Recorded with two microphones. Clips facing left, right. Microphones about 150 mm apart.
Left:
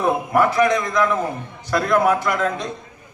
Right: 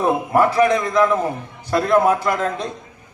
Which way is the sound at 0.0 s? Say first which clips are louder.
Right 1 dB; 30° right (ahead or behind).